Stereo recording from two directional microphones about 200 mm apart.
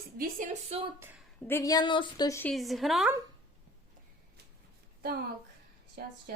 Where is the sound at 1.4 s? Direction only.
10° left (ahead or behind).